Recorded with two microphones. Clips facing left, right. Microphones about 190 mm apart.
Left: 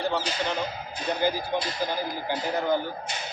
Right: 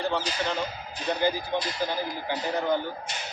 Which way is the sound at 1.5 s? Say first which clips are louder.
Even; 10° left (ahead or behind).